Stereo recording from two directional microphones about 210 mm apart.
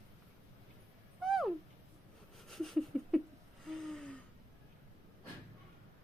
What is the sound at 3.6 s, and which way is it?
Gasp, centre (ahead or behind).